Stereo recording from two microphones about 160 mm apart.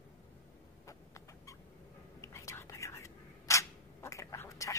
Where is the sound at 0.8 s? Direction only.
20° left (ahead or behind).